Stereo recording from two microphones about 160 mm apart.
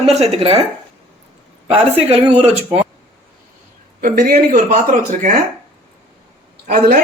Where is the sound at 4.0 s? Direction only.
70° right (ahead or behind).